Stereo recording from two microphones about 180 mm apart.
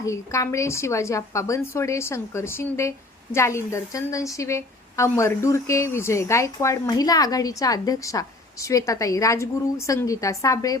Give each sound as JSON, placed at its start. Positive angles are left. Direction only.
{"t": 0.0, "sound": "a woman's voice", "side_deg": 15}